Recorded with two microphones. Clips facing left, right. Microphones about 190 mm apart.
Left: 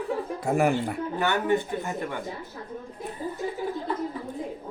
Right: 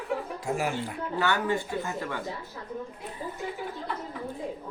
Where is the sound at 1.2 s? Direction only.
20° left (ahead or behind).